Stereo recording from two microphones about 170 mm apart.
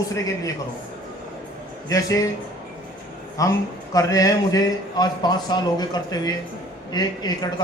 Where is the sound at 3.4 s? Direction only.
20° left (ahead or behind).